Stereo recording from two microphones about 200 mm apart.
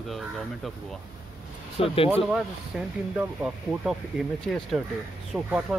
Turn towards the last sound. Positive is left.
turn(degrees=-5)  # may be behind; listen again after turning